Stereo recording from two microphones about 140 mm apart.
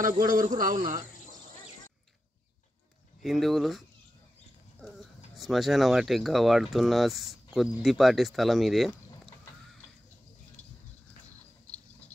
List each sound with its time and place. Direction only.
0.0 s speech: 75° right (ahead or behind)
3.2 s speech: centre (ahead or behind)